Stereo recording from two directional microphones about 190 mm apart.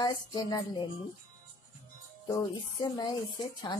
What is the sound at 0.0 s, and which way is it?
Speech, 25° left (ahead or behind).